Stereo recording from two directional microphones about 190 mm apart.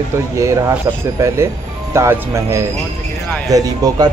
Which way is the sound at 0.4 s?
15° right (ahead or behind).